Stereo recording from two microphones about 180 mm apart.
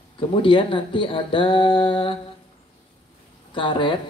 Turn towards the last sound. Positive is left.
turn(degrees=25)  # may be behind; listen again after turning